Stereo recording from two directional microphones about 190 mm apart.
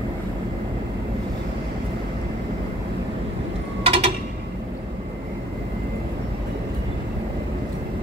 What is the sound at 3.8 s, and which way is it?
Mechanisms, 30° right (ahead or behind).